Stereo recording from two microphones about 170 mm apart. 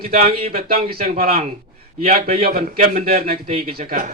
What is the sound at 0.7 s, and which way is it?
A man's voice, 60° right (ahead or behind).